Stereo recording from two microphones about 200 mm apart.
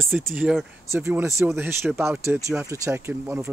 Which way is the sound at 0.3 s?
Centre (ahead or behind).